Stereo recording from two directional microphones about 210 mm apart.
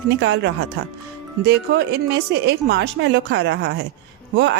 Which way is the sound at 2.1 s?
50° right (ahead or behind).